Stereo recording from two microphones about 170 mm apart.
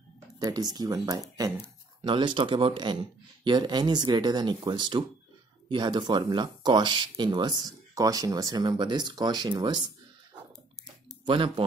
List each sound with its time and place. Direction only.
0.4 s speech: 20° right (ahead or behind)
11.2 s speech: 30° right (ahead or behind)